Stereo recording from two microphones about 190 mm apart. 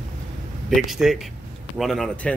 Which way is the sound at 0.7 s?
Centre (ahead or behind).